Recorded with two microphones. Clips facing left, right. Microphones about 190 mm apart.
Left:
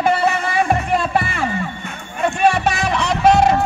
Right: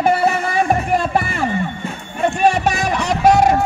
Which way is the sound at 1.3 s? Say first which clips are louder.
Right 2 dB; 45° right (ahead or behind).